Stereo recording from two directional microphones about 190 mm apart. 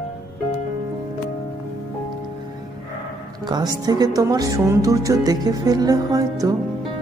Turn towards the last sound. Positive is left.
turn(degrees=-20)  # may be behind; listen again after turning